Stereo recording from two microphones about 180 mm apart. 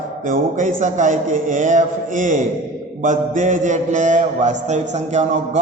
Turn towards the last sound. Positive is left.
turn(degrees=-40)  # may be behind; listen again after turning